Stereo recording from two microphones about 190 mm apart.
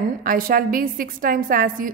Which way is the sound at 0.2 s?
50° right (ahead or behind).